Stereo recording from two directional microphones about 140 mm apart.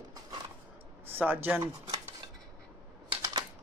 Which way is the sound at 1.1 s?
15° right (ahead or behind).